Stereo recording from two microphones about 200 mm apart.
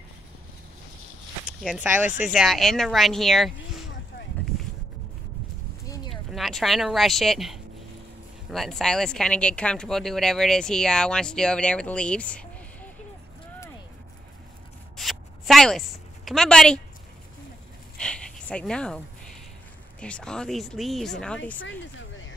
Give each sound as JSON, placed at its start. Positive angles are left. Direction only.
{"t": 1.6, "sound": "speech", "side_deg": -5}
{"t": 5.9, "sound": "a sound", "side_deg": 20}
{"t": 6.3, "sound": "speech", "side_deg": 0}
{"t": 15.0, "sound": "zipper", "side_deg": 0}
{"t": 16.3, "sound": "speech", "side_deg": 5}
{"t": 18.0, "sound": "a sound", "side_deg": 5}
{"t": 20.0, "sound": "speech", "side_deg": 5}
{"t": 21.5, "sound": "speech", "side_deg": 75}